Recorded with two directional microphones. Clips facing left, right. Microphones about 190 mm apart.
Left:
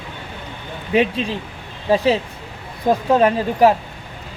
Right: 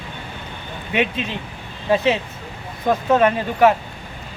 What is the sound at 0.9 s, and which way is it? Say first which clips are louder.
Speech: left 4 dB; 35° left (ahead or behind).